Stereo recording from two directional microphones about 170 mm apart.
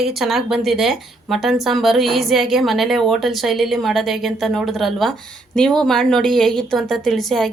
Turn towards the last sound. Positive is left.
turn(degrees=0)  # may be behind; listen again after turning